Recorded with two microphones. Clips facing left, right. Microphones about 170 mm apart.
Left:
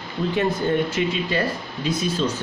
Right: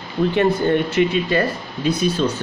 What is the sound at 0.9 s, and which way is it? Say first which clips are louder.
Speech: right 6 dB; 60° right (ahead or behind).